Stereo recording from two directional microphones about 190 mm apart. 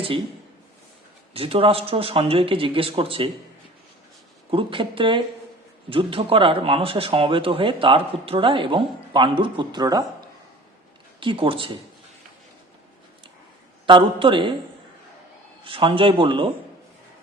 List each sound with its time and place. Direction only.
1.3 s speech: 30° right (ahead or behind)
4.5 s speech: 25° right (ahead or behind)
11.2 s speech: 25° right (ahead or behind)
13.8 s speech: 25° right (ahead or behind)
15.6 s speech: 30° right (ahead or behind)